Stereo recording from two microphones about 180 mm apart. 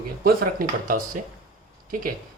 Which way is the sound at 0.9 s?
50° right (ahead or behind).